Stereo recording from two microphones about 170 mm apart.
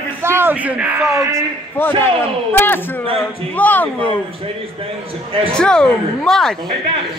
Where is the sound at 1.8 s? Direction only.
10° left (ahead or behind).